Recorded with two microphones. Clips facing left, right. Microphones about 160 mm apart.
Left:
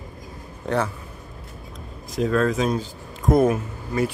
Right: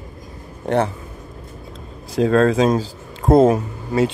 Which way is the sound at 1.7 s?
30° right (ahead or behind).